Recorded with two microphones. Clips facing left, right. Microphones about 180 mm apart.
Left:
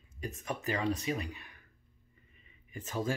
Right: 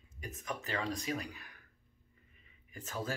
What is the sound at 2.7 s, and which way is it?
Speech, 10° left (ahead or behind).